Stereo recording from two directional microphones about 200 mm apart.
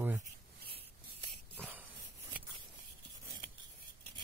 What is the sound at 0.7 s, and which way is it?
Rub, 30° right (ahead or behind).